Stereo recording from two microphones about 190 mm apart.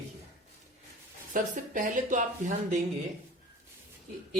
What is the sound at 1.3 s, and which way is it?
Speech, 40° right (ahead or behind).